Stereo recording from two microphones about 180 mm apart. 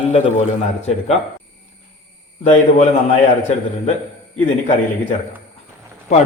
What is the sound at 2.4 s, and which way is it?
Speech, 40° left (ahead or behind).